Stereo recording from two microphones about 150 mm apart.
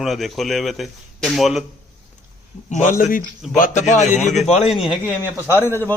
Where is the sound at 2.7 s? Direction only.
60° left (ahead or behind).